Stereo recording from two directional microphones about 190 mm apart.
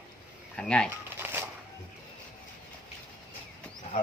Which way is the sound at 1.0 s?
10° right (ahead or behind).